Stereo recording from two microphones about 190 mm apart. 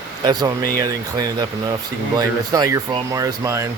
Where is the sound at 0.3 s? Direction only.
20° right (ahead or behind).